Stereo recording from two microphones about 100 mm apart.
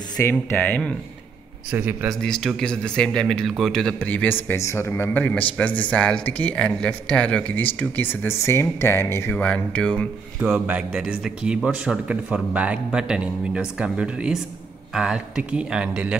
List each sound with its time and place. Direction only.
0.2 s speech: 15° left (ahead or behind)
1.7 s a man's voice: 20° right (ahead or behind)
2.2 s speech: 5° left (ahead or behind)
4.0 s speech: 15° left (ahead or behind)
9.4 s speech: 15° left (ahead or behind)
10.4 s a man's voice: 15° right (ahead or behind)